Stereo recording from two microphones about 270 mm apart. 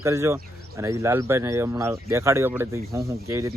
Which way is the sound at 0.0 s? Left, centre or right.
Centre.